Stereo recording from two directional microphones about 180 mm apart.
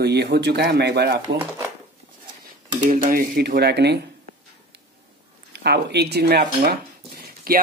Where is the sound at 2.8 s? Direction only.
50° right (ahead or behind); by 4.0 s 70° right (ahead or behind).